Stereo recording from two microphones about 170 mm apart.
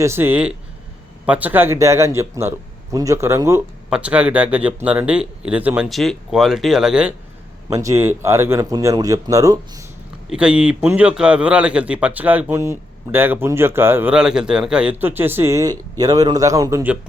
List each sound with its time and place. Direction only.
0.0 s a man's voice: 15° right (ahead or behind)
3.8 s a man's voice: 5° right (ahead or behind)
7.7 s speech: 20° right (ahead or behind)
10.2 s a man's voice: 5° right (ahead or behind)